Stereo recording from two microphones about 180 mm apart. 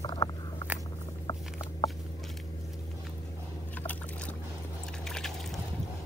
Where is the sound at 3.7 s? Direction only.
10° left (ahead or behind).